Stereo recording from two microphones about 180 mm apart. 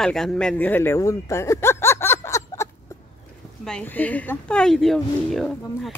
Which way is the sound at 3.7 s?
10° left (ahead or behind).